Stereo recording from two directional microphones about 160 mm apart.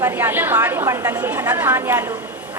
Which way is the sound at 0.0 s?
15° right (ahead or behind).